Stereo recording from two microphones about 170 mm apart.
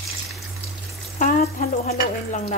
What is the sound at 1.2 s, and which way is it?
Stir, 50° left (ahead or behind).